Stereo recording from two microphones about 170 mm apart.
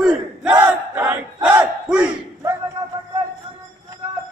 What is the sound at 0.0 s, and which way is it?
Battle cry, 5° right (ahead or behind).